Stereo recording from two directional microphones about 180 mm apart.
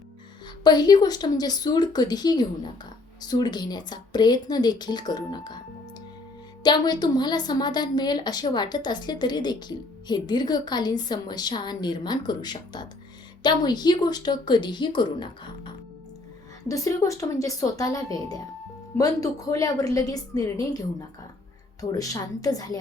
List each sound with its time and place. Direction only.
0.6 s a woman's voice: 25° left (ahead or behind)
6.6 s a woman's voice: 25° left (ahead or behind)